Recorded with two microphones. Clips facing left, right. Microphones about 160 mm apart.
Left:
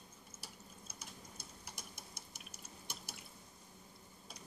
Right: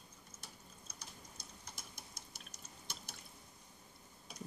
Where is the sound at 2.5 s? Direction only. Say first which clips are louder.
Left 2 dB; 10° left (ahead or behind).